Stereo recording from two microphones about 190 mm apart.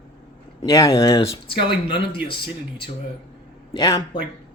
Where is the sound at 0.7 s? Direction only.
15° left (ahead or behind).